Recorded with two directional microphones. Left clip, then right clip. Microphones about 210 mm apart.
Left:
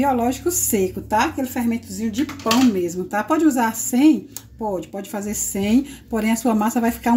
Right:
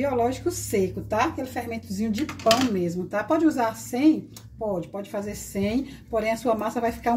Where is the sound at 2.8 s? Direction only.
45° left (ahead or behind).